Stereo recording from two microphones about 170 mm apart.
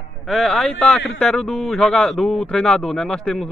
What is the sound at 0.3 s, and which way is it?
Speech, centre (ahead or behind).